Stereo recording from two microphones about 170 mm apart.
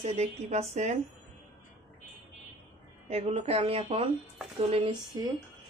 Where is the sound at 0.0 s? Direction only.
40° right (ahead or behind).